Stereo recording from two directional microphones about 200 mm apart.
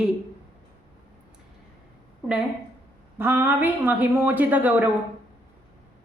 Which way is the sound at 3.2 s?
10° right (ahead or behind).